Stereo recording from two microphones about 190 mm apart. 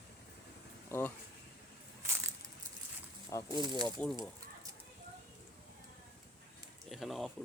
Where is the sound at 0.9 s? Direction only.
10° left (ahead or behind).